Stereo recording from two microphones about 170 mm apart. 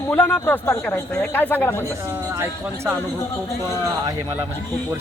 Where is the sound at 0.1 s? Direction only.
10° left (ahead or behind).